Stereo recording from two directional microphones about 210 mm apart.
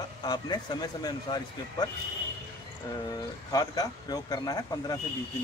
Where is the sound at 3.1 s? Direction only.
20° left (ahead or behind).